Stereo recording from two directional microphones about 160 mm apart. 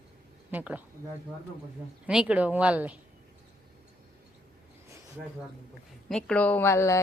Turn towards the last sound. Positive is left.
turn(degrees=15)  # may be behind; listen again after turning